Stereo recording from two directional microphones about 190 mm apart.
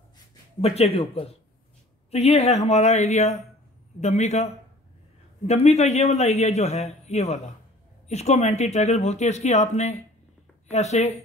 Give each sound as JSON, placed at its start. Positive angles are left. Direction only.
{"t": 0.6, "sound": "a man's voice", "side_deg": 30}
{"t": 5.5, "sound": "a man's voice", "side_deg": 35}